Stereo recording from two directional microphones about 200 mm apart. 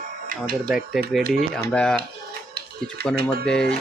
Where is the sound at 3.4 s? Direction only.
5° left (ahead or behind).